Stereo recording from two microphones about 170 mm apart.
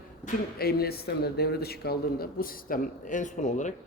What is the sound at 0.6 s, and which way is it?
A man's voice, 65° left (ahead or behind).